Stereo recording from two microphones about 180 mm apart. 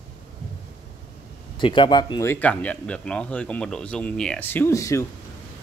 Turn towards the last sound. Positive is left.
turn(degrees=15)  # may be behind; listen again after turning